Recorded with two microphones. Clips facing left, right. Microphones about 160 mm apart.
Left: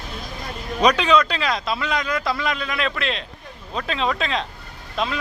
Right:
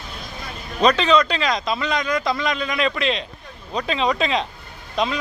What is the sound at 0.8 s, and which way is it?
A man's voice, 10° left (ahead or behind).